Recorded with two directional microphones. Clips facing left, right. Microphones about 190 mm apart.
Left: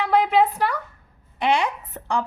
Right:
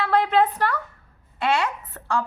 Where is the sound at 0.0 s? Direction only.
10° left (ahead or behind).